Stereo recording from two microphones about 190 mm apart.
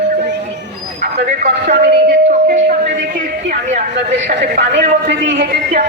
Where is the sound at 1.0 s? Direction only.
40° right (ahead or behind).